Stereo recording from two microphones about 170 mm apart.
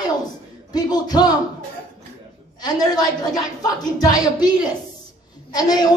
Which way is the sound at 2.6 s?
25° left (ahead or behind).